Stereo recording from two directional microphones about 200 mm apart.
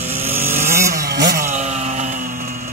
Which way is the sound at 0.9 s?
55° right (ahead or behind).